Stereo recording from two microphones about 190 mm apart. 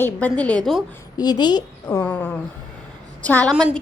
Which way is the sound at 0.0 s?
10° left (ahead or behind).